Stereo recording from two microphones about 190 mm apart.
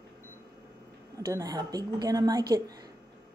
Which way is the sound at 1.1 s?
15° right (ahead or behind).